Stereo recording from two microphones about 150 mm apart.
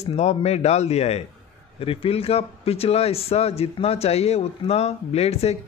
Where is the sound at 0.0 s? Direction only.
45° left (ahead or behind).